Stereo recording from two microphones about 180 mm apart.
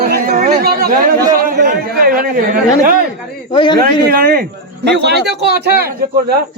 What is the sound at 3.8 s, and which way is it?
A man's voice, 55° right (ahead or behind).